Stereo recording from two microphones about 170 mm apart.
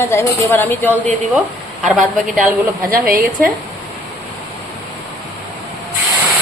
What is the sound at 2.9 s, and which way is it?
Speech, 60° right (ahead or behind).